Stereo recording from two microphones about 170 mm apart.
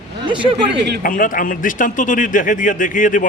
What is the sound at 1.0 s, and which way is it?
A man's voice, 50° left (ahead or behind).